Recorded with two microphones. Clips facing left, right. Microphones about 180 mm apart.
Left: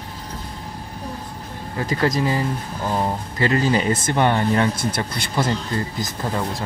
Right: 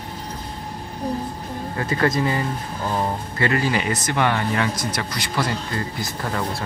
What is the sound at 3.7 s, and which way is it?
Speech, 30° left (ahead or behind).